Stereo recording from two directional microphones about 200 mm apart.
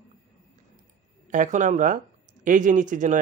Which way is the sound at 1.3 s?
40° right (ahead or behind).